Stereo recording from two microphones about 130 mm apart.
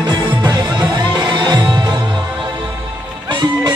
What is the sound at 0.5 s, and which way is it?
Music, 30° right (ahead or behind).